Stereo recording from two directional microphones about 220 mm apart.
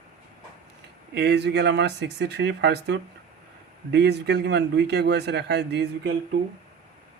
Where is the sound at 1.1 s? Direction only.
50° right (ahead or behind).